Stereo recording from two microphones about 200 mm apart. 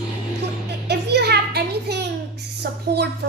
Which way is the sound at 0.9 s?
55° right (ahead or behind).